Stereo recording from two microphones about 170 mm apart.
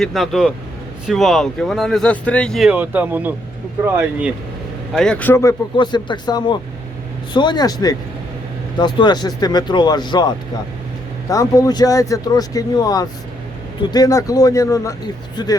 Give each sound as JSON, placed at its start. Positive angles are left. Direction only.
{"t": 0.0, "sound": "speech", "side_deg": 0}
{"t": 2.6, "sound": "speech", "side_deg": -10}
{"t": 4.9, "sound": "speech", "side_deg": 5}